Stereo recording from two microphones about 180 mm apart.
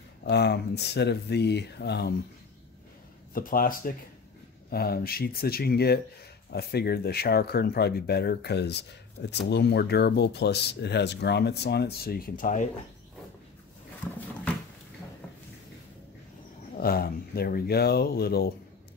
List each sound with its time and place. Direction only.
0.2 s speech: 65° left (ahead or behind)
3.3 s speech: 50° left (ahead or behind)
16.8 s speech: 55° left (ahead or behind)